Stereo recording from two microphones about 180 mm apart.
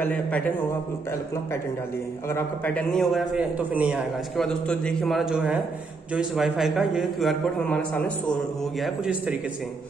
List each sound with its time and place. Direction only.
0.0 s a man's voice: 10° left (ahead or behind)
2.2 s a man's voice: 10° left (ahead or behind)
8.8 s a man's voice: 5° right (ahead or behind)